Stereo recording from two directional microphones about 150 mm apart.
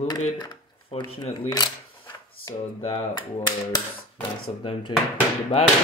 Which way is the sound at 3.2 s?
30° left (ahead or behind).